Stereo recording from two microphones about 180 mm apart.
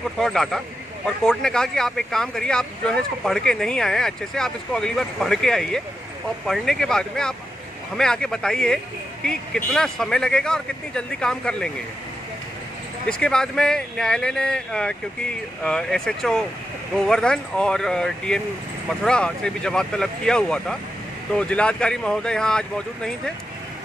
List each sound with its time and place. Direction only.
0.2 s speech: centre (ahead or behind)
13.2 s speech: 5° left (ahead or behind)